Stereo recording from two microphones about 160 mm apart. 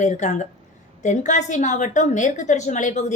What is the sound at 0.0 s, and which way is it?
A woman's voice, 50° left (ahead or behind).